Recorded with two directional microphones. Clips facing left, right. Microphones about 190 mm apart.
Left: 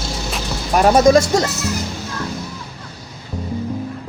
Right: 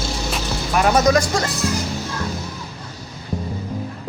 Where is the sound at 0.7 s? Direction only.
30° left (ahead or behind).